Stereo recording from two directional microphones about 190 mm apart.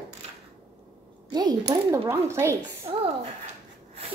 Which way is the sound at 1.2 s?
20° right (ahead or behind).